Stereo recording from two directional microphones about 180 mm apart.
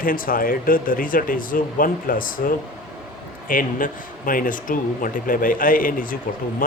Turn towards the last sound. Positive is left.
turn(degrees=50)  # may be behind; listen again after turning